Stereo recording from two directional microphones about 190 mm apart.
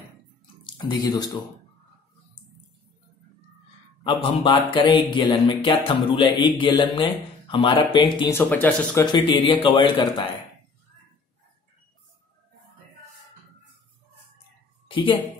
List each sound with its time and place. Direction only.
0.7 s music: 20° left (ahead or behind)
4.0 s music: 25° left (ahead or behind)
8.3 s speech: 10° left (ahead or behind)
9.0 s music: 25° left (ahead or behind)
14.9 s speech: 25° left (ahead or behind)